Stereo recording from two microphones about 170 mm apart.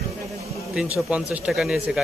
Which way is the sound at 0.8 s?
5° right (ahead or behind).